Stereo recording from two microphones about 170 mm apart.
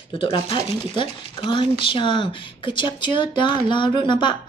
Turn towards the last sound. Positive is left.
turn(degrees=25)  # may be behind; listen again after turning